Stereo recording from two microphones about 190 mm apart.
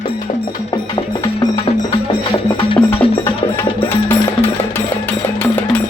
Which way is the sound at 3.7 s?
10° left (ahead or behind).